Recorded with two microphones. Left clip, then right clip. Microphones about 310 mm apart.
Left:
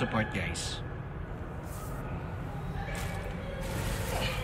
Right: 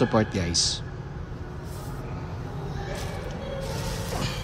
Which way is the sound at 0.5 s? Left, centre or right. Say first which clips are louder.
Right 13 dB; right.